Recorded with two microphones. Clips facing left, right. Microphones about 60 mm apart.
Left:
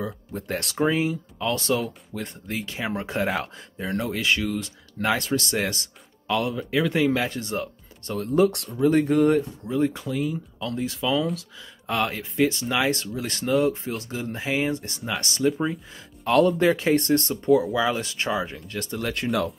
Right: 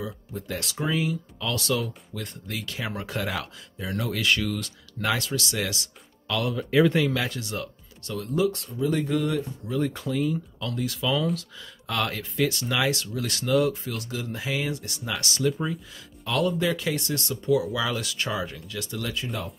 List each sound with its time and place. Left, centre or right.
0.0 s speech: left
0.7 s speech: left
6.2 s speech: left
6.5 s speech: centre
7.0 s speech: left
8.7 s speech: left
9.7 s speech: left
9.9 s speech: centre
10.7 s speech: left
16.3 s speech: left
17.7 s speech: left
18.7 s speech: left
19.1 s speech: left